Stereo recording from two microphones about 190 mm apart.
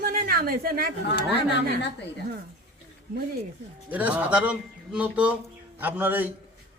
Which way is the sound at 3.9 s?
10° right (ahead or behind).